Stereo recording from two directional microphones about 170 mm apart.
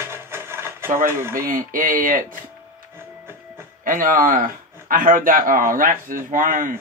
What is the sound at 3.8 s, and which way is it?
A man's voice, 55° right (ahead or behind).